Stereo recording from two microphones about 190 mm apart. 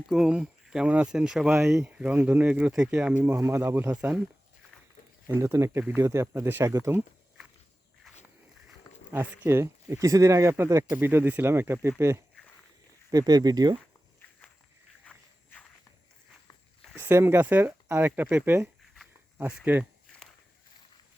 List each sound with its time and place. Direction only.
0.1 s speech: 5° right (ahead or behind)
5.3 s speech: 15° right (ahead or behind)
9.1 s speech: 15° right (ahead or behind)
15.0 s walk: 5° left (ahead or behind)
16.9 s speech: 10° right (ahead or behind)